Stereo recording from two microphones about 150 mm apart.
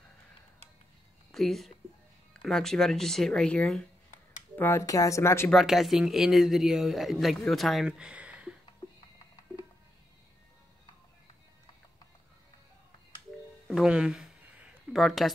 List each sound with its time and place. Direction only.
1.3 s speech: centre (ahead or behind)
4.6 s speech: 15° left (ahead or behind)
5.5 s speech: centre (ahead or behind)
13.7 s a sound: 5° right (ahead or behind)